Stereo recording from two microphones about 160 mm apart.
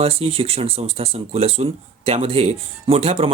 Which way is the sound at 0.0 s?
40° right (ahead or behind).